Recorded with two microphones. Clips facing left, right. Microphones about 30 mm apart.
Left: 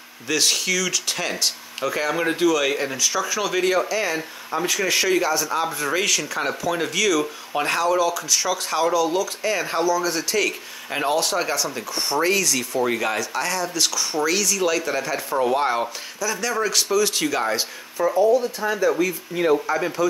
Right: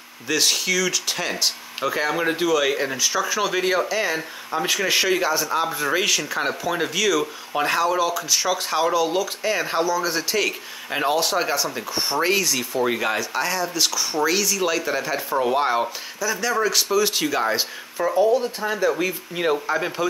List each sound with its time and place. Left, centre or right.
0.3 s speech: centre